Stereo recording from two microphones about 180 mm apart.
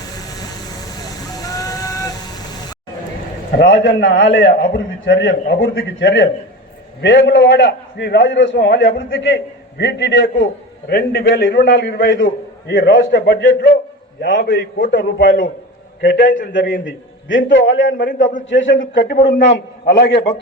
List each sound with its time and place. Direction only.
1.4 s a sound: 20° left (ahead or behind)
3.6 s a man's voice: 75° left (ahead or behind)
14.2 s a man's voice: 65° left (ahead or behind)
16.0 s a man's voice: 65° left (ahead or behind)
16.5 s a man's voice: 85° left
17.9 s a man's voice: 50° left (ahead or behind)
18.4 s a man's voice: 90° left
19.0 s a man's voice: 65° left (ahead or behind)